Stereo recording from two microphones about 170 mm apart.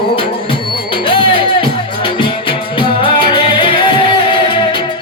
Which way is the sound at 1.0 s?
30° left (ahead or behind).